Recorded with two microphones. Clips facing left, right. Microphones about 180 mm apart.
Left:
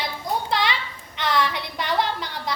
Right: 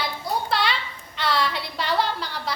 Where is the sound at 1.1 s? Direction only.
20° left (ahead or behind).